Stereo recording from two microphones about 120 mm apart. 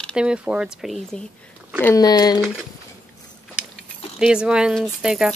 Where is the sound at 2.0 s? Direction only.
35° left (ahead or behind).